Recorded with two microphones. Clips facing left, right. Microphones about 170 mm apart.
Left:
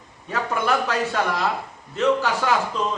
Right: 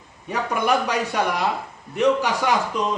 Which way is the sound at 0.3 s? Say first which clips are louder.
Right 1 dB; 15° right (ahead or behind).